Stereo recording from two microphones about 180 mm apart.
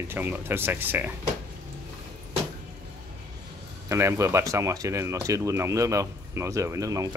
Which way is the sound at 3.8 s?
15° right (ahead or behind).